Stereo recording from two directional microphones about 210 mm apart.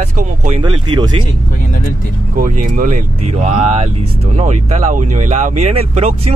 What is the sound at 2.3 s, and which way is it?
Speech, 40° right (ahead or behind).